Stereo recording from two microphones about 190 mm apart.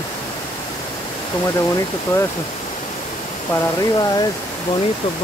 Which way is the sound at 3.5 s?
20° left (ahead or behind).